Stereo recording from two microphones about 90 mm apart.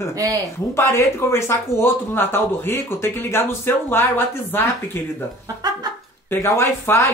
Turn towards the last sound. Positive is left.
turn(degrees=30)  # may be behind; listen again after turning